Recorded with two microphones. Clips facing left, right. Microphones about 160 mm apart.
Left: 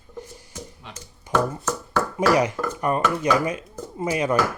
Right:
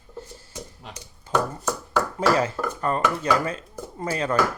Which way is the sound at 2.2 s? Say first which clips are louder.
Left 3 dB; 15° left (ahead or behind).